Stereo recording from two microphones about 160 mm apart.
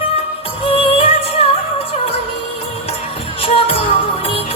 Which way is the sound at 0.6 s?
35° left (ahead or behind).